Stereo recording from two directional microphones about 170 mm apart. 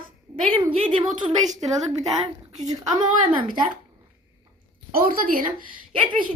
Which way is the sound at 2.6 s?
25° right (ahead or behind).